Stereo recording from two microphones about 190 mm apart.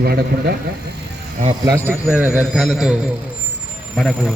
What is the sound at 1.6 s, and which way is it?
A man's voice, 10° right (ahead or behind).